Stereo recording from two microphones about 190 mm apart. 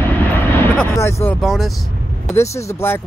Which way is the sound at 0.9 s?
15° left (ahead or behind).